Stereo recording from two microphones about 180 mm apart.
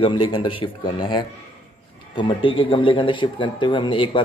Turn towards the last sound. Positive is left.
turn(degrees=30)  # may be behind; listen again after turning